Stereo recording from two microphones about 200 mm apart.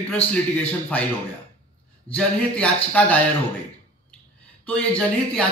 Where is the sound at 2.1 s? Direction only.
5° left (ahead or behind).